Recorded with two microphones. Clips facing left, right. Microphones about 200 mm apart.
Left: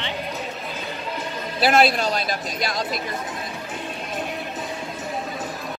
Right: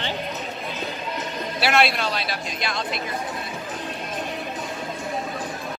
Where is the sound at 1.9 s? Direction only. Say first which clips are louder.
Left 3 dB; 45° left (ahead or behind).